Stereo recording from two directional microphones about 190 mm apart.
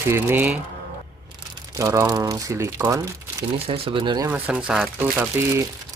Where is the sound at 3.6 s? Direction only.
30° right (ahead or behind).